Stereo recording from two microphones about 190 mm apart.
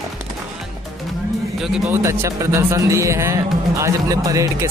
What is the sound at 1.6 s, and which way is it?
Speech, 5° right (ahead or behind).